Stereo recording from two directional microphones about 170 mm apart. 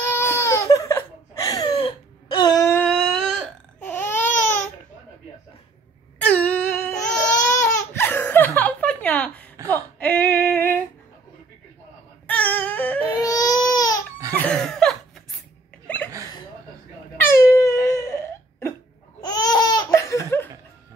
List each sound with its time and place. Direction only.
0.0 s baby cry: 10° left (ahead or behind)
1.6 s a sound: 35° left (ahead or behind); by 2.9 s 15° left (ahead or behind)
2.9 s a sound: centre (ahead or behind)
3.8 s baby cry: 10° left (ahead or behind)
6.1 s a sound: 10° left (ahead or behind)
9.7 s female singing: 10° left (ahead or behind)
12.3 s a sound: 10° left (ahead or behind)
13.1 s baby cry: 20° left (ahead or behind)
14.3 s cough: 5° left (ahead or behind)
15.9 s hiccup: 10° left (ahead or behind)
17.2 s wail: 15° left (ahead or behind)
19.2 s laughter: 20° left (ahead or behind)